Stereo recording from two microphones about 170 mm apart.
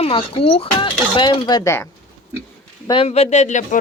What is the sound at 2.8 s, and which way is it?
Speech, 30° left (ahead or behind).